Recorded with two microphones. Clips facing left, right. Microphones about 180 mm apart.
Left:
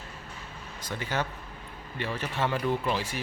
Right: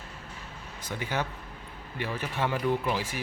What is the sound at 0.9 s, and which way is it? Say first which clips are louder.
A man's voice: even; 15° right (ahead or behind).